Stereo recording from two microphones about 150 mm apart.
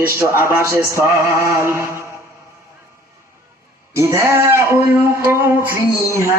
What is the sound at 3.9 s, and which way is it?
A man's voice, 20° right (ahead or behind).